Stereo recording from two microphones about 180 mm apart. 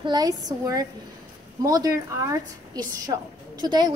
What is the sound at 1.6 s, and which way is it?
A woman's voice, 20° right (ahead or behind).